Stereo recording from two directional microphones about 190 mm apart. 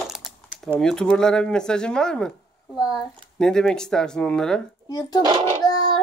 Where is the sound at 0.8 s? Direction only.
5° left (ahead or behind).